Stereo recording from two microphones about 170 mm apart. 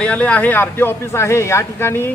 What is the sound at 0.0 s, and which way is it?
Speech, 5° left (ahead or behind).